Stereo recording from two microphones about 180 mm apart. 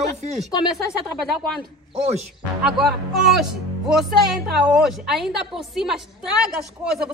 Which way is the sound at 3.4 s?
Centre (ahead or behind).